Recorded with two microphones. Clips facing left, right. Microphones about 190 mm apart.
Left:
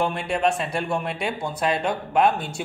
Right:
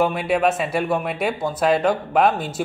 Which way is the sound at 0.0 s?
5° right (ahead or behind).